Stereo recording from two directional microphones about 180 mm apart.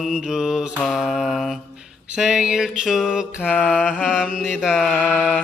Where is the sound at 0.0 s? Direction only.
5° right (ahead or behind).